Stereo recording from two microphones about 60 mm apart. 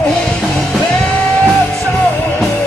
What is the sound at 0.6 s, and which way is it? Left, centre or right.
Music, centre.